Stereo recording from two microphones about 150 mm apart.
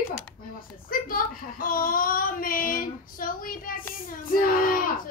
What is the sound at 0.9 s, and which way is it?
Speech, 70° left (ahead or behind).